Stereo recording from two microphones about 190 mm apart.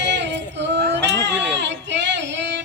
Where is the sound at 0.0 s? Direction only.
65° right (ahead or behind).